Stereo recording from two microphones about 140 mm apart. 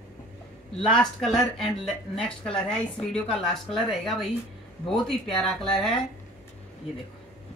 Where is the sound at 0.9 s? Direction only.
5° left (ahead or behind).